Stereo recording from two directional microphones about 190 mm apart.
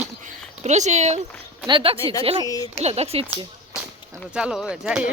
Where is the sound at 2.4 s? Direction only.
20° left (ahead or behind).